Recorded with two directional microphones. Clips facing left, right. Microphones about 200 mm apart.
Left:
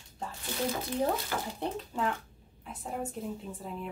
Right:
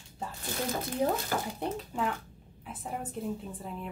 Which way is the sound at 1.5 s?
5° right (ahead or behind).